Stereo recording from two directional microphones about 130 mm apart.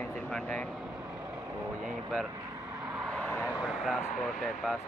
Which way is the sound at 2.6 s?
25° right (ahead or behind).